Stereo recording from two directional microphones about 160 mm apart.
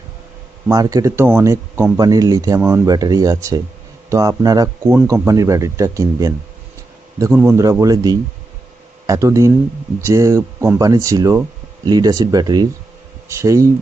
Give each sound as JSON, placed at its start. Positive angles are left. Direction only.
{"t": 0.7, "sound": "speech", "side_deg": -20}